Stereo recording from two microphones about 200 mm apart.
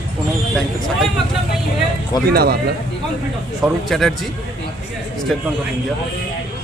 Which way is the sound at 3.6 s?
Centre (ahead or behind).